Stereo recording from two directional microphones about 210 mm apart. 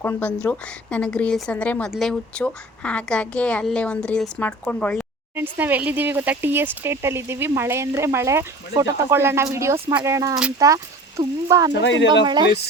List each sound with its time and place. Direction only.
0.0 s a woman's voice: 10° left (ahead or behind)
5.4 s speech: 10° right (ahead or behind)
11.7 s speech: 60° left (ahead or behind)
12.2 s speech: 20° right (ahead or behind)